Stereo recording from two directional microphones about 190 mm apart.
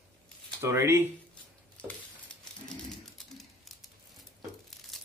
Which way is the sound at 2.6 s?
Centre (ahead or behind).